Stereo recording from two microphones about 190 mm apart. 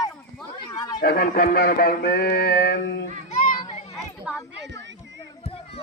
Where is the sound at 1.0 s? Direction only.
55° left (ahead or behind).